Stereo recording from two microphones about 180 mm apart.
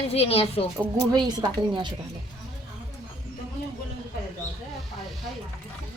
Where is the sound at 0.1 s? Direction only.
35° left (ahead or behind).